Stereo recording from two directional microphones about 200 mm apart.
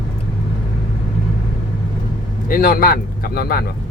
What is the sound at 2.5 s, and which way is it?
Speech, 45° left (ahead or behind).